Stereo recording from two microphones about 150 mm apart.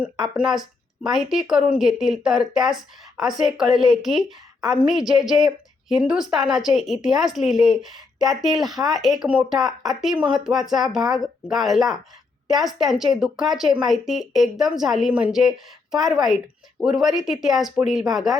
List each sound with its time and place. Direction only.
0.0 s speech: 5° right (ahead or behind)